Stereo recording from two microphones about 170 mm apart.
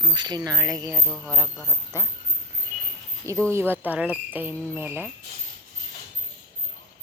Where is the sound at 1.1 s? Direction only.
Centre (ahead or behind).